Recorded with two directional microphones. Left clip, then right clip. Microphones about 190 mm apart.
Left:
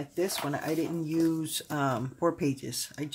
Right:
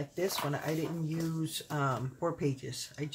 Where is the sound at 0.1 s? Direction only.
50° left (ahead or behind).